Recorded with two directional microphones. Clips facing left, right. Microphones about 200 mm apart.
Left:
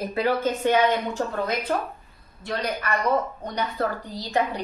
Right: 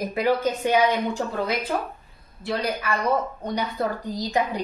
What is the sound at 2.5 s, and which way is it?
Speech, 10° right (ahead or behind).